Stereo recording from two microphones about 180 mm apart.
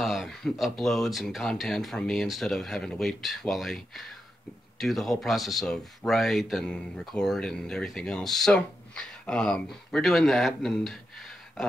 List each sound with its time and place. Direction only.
0.0 s speech: centre (ahead or behind)